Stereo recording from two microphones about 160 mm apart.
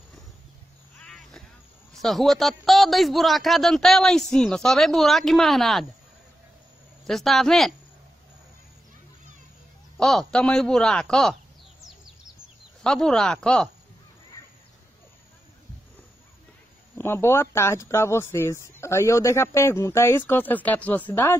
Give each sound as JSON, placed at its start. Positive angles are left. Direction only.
{"t": 1.0, "sound": "a sound", "side_deg": 5}
{"t": 2.0, "sound": "a man's voice", "side_deg": 0}
{"t": 7.1, "sound": "a man's voice", "side_deg": 0}
{"t": 9.9, "sound": "a man's voice", "side_deg": 5}
{"t": 12.8, "sound": "a man's voice", "side_deg": 5}
{"t": 17.0, "sound": "speech", "side_deg": 15}